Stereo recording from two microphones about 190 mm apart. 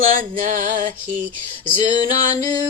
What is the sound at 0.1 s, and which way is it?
Music, 45° right (ahead or behind).